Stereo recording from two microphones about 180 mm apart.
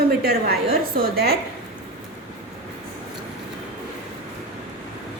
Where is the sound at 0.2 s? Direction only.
60° right (ahead or behind).